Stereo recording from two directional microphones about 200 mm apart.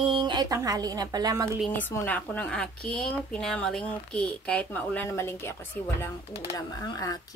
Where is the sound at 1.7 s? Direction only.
10° left (ahead or behind).